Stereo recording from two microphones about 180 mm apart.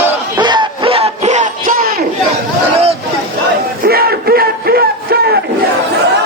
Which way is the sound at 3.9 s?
60° right (ahead or behind).